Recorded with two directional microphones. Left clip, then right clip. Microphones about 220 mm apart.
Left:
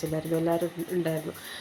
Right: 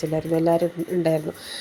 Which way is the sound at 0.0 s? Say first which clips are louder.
Right 6 dB; 20° right (ahead or behind).